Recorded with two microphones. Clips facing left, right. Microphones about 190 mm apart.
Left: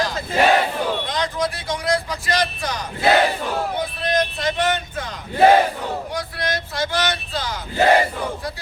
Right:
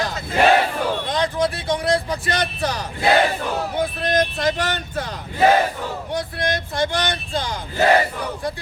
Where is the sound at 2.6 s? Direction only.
35° right (ahead or behind).